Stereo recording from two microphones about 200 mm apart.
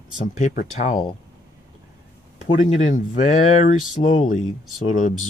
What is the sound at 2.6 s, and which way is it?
Speech, 35° left (ahead or behind).